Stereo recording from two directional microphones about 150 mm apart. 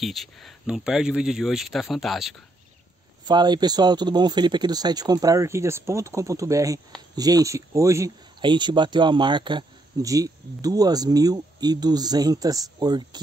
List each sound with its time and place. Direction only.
0.0 s speech: centre (ahead or behind)
3.3 s speech: 30° right (ahead or behind)
8.4 s speech: 30° right (ahead or behind)